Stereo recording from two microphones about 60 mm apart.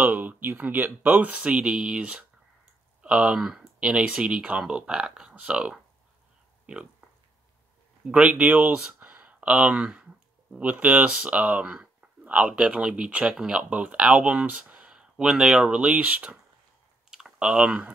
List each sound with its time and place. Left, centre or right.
0.0 s speech: right
1.5 s speech: centre
3.3 s speech: centre
3.8 s speech: centre
6.6 s a sound: centre
8.0 s speech: right
17.1 s speech: centre